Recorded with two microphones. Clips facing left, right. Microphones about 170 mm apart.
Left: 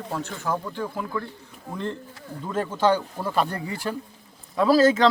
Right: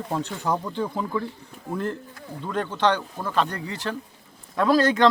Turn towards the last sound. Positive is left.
turn(degrees=0)  # may be behind; listen again after turning